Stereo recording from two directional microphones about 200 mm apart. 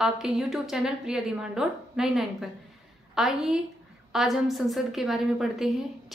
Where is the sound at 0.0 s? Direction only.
Centre (ahead or behind).